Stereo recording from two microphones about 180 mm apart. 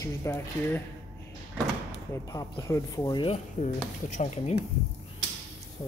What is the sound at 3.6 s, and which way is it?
Speech, 40° left (ahead or behind).